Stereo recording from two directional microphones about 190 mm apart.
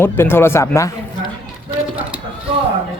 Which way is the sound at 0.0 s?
10° left (ahead or behind).